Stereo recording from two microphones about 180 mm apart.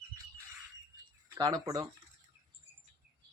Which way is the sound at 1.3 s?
20° right (ahead or behind).